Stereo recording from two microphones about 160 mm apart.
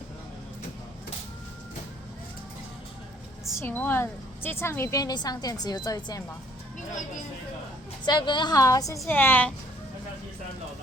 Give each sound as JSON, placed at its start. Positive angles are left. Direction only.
{"t": 3.6, "sound": "a woman's voice", "side_deg": 15}
{"t": 8.0, "sound": "a woman's voice", "side_deg": 30}